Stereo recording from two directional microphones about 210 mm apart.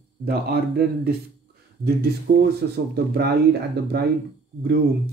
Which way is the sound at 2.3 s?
45° right (ahead or behind).